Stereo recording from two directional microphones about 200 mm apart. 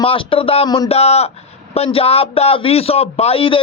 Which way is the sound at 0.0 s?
25° left (ahead or behind).